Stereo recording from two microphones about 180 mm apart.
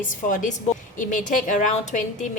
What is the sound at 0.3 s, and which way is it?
A woman's voice, 45° left (ahead or behind).